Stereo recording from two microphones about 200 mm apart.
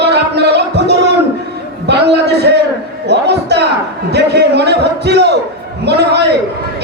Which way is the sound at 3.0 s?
55° right (ahead or behind).